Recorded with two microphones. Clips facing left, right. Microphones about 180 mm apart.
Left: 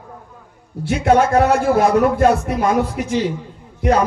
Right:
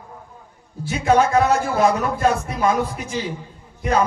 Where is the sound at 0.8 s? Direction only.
65° left (ahead or behind).